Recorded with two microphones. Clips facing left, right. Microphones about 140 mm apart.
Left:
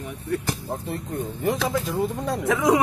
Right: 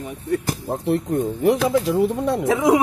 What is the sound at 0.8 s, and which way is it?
Speech, 75° right (ahead or behind).